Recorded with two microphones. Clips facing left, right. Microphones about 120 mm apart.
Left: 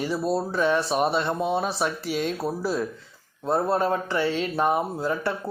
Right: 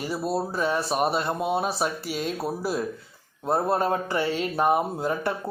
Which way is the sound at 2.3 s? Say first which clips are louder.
Left 1 dB; 10° right (ahead or behind).